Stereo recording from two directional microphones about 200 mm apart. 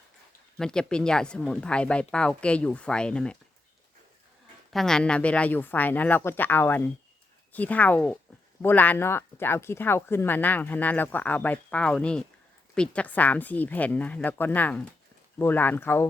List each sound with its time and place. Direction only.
0.6 s speech: 5° left (ahead or behind)
4.7 s speech: centre (ahead or behind)